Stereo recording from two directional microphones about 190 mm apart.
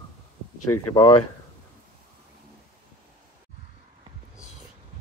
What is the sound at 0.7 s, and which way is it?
Speech, 15° left (ahead or behind).